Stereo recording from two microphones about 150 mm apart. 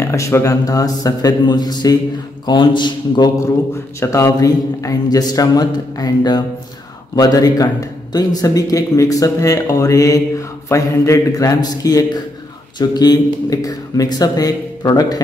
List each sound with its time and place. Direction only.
0.0 s a man's voice: 20° left (ahead or behind)
4.0 s a man's voice: 20° left (ahead or behind)